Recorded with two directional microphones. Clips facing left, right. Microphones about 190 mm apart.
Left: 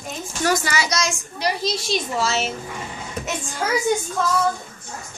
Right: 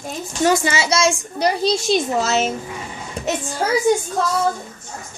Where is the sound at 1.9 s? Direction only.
45° right (ahead or behind).